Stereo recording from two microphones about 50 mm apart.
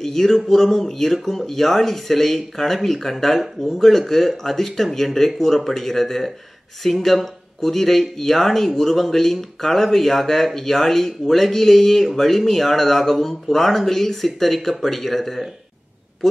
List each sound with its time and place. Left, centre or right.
0.0 s speech: centre